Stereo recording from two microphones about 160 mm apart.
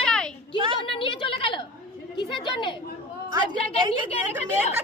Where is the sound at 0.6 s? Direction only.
30° right (ahead or behind).